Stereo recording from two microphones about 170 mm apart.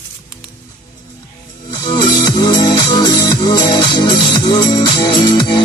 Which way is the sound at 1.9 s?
25° left (ahead or behind).